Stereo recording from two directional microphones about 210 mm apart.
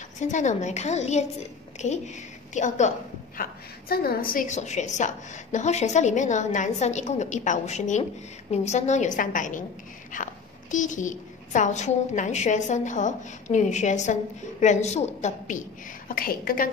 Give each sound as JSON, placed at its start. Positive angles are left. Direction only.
{"t": 0.2, "sound": "a woman's voice", "side_deg": 35}
{"t": 3.9, "sound": "a woman's voice", "side_deg": 45}